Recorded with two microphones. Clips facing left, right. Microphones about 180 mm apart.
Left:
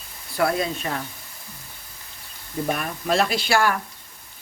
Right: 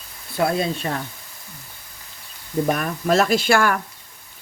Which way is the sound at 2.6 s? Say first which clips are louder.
Right 3 dB; 45° right (ahead or behind).